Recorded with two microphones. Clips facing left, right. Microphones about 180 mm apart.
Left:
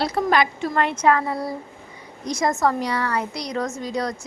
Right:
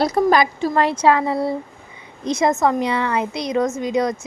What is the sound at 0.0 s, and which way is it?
A woman's voice, 40° right (ahead or behind).